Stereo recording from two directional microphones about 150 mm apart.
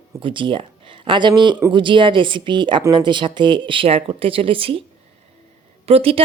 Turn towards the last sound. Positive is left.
turn(degrees=-40)  # may be behind; listen again after turning